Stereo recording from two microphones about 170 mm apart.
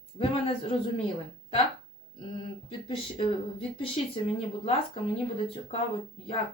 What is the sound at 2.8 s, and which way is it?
Speech, 30° left (ahead or behind).